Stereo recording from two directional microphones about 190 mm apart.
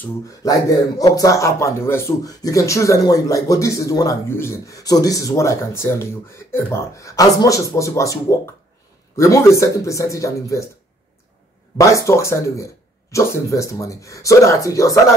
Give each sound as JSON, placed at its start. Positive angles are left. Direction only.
{"t": 0.0, "sound": "speech", "side_deg": 15}
{"t": 11.8, "sound": "speech", "side_deg": 15}